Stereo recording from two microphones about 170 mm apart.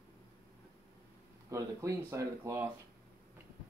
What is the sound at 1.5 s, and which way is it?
Speech, 20° right (ahead or behind).